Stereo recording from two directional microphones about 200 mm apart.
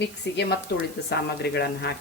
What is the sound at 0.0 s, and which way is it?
A woman's voice, 60° left (ahead or behind).